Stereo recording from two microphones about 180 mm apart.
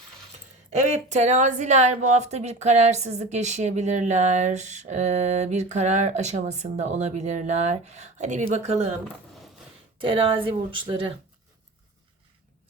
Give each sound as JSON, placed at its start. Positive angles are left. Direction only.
{"t": 0.7, "sound": "a woman's voice", "side_deg": -40}
{"t": 10.0, "sound": "speech", "side_deg": -30}